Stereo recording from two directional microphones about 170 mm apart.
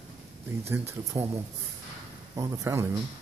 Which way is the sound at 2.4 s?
20° right (ahead or behind).